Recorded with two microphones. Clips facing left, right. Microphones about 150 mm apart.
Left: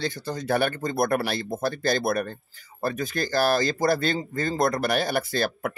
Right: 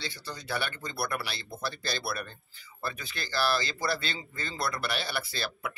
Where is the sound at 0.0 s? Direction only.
45° left (ahead or behind).